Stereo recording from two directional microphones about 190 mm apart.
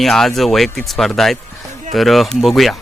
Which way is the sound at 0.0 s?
Centre (ahead or behind).